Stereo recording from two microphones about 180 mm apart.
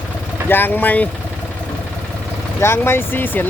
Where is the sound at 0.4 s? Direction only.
10° left (ahead or behind).